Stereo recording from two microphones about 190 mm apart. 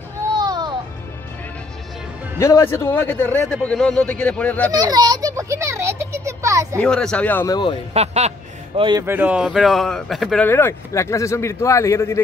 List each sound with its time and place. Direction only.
0.4 s music: 20° right (ahead or behind)
2.3 s speech: 15° left (ahead or behind)
4.7 s a child's voice: 20° right (ahead or behind)
6.8 s speech: 5° left (ahead or behind)
7.9 s a man's voice: 35° right (ahead or behind)
9.0 s speech: 10° right (ahead or behind); by 12.2 s 15° left (ahead or behind)